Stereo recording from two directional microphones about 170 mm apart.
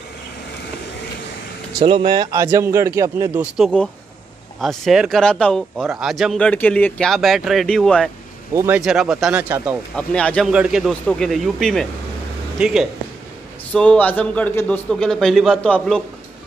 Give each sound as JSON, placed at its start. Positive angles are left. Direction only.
{"t": 1.8, "sound": "speech", "side_deg": -35}
{"t": 2.1, "sound": "speech", "side_deg": -15}
{"t": 3.5, "sound": "a man's voice", "side_deg": 5}
{"t": 8.5, "sound": "speech", "side_deg": -10}
{"t": 9.9, "sound": "speech", "side_deg": 5}
{"t": 10.5, "sound": "a man's voice", "side_deg": -5}
{"t": 13.7, "sound": "a man's voice", "side_deg": 10}